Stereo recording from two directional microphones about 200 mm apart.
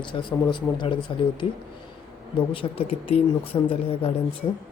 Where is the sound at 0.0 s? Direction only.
25° left (ahead or behind).